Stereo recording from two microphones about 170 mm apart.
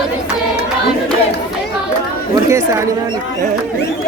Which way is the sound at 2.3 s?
15° right (ahead or behind).